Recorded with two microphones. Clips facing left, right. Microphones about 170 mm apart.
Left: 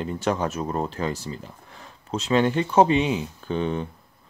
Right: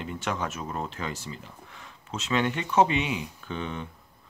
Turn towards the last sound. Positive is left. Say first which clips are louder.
# left 8 dB
turn(degrees=35)  # may be behind; listen again after turning